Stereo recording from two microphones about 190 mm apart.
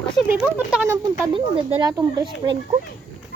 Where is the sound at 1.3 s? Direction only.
25° right (ahead or behind).